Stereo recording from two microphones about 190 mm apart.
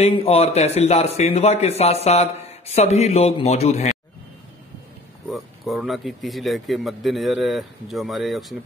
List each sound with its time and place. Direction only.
0.0 s a man's voice: 30° left (ahead or behind)
5.3 s speech: centre (ahead or behind)